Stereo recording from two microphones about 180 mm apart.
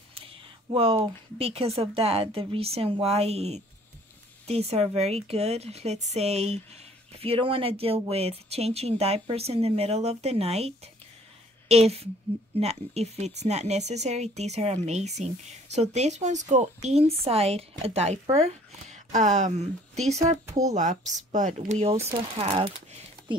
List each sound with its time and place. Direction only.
0.1 s a sound: 30° right (ahead or behind)
1.8 s speech: 35° right (ahead or behind)
11.7 s speech: 35° right (ahead or behind)
20.7 s speech: 40° right (ahead or behind)